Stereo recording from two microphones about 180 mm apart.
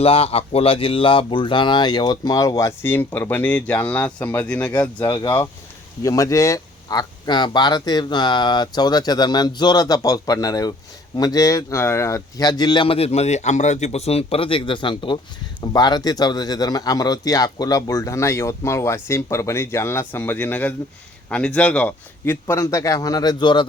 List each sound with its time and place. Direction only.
0.0 s speech: 35° left (ahead or behind); by 5.0 s 10° left (ahead or behind)
5.0 s speech: 20° left (ahead or behind)